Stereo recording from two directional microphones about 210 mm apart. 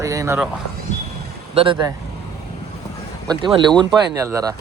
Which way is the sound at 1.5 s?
25° right (ahead or behind).